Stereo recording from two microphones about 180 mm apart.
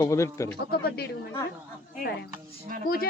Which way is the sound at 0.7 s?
60° left (ahead or behind).